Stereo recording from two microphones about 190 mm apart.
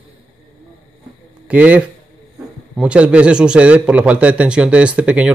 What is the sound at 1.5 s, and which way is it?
A man's voice, 5° right (ahead or behind).